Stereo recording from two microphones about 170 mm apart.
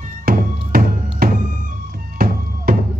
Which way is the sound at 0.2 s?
60° right (ahead or behind).